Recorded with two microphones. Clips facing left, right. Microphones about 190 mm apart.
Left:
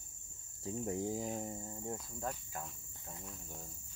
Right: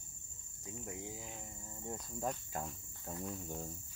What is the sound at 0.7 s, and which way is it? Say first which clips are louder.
Speech: left 9 dB; 35° left (ahead or behind).